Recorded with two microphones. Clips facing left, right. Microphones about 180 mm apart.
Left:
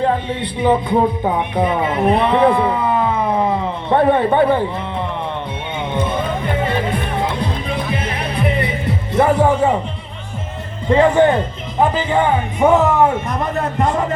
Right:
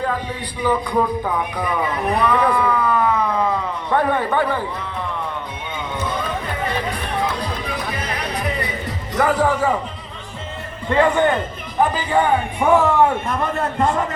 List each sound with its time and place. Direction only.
0.0 s speech: 25° left (ahead or behind)
5.9 s music: 25° left (ahead or behind)
9.1 s speech: 25° left (ahead or behind)
10.8 s speech: 20° left (ahead or behind)